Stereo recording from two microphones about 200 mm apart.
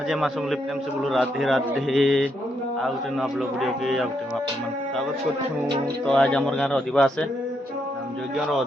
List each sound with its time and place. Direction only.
1.0 s speech: centre (ahead or behind)
6.1 s speech: 5° left (ahead or behind)